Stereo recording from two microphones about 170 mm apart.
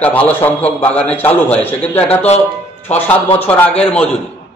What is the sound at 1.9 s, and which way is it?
Speech, 35° left (ahead or behind).